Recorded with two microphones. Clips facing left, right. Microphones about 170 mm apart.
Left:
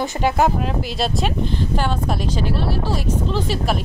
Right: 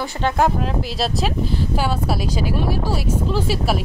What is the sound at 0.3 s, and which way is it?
Speech, centre (ahead or behind).